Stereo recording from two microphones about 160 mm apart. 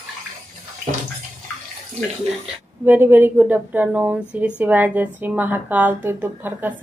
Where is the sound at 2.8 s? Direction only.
10° right (ahead or behind).